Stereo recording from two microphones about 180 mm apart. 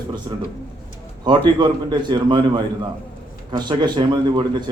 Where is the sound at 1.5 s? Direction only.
25° right (ahead or behind).